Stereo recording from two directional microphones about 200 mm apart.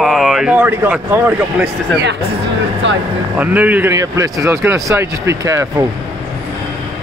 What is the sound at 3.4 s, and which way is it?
Speech, 10° right (ahead or behind).